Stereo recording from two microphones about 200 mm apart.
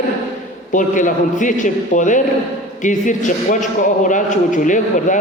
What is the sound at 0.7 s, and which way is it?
A man's voice, 40° left (ahead or behind).